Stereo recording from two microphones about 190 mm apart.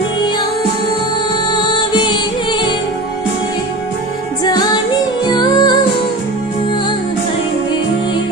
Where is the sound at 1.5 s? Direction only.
25° left (ahead or behind).